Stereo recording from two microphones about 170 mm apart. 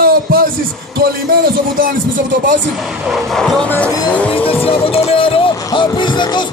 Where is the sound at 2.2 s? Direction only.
90° right.